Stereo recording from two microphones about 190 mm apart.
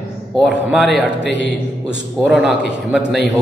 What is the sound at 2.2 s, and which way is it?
Speech, 5° right (ahead or behind).